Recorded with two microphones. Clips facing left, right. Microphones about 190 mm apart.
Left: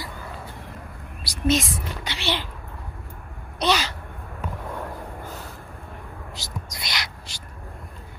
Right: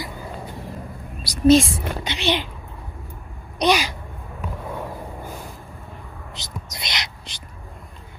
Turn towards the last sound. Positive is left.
turn(degrees=-20)  # may be behind; listen again after turning